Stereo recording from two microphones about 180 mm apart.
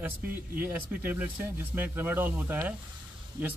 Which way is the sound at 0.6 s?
10° right (ahead or behind).